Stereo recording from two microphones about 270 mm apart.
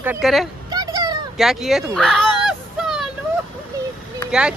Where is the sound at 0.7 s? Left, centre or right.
Centre.